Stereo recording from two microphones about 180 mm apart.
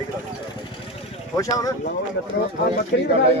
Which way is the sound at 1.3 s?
20° left (ahead or behind).